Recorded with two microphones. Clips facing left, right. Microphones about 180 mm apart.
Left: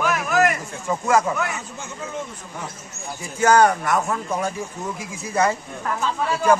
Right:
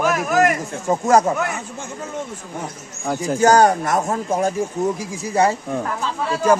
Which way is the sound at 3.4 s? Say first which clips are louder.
Right 2 dB; 35° right (ahead or behind).